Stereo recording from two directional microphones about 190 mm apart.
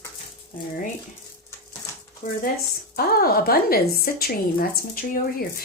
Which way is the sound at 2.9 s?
50° left (ahead or behind).